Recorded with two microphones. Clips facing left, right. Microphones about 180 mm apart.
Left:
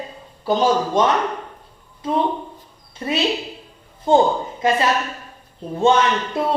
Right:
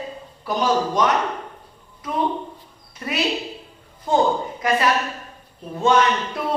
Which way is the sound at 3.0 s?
30° left (ahead or behind).